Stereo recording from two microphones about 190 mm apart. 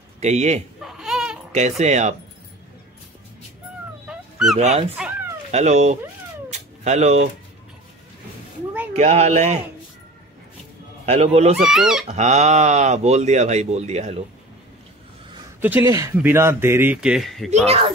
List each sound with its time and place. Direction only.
0.2 s speech: 35° right (ahead or behind)
0.7 s a sound: centre (ahead or behind)
1.5 s speech: 35° right (ahead or behind)
4.1 s dog: centre (ahead or behind)
4.9 s cat: 5° right (ahead or behind)
5.5 s speech: 35° right (ahead or behind)
8.9 s speech: 35° right (ahead or behind)
11.1 s speech: 35° right (ahead or behind)
11.5 s speech: centre (ahead or behind)
12.1 s speech: 35° right (ahead or behind)
15.6 s speech: 10° right (ahead or behind)
17.6 s speech: 30° right (ahead or behind)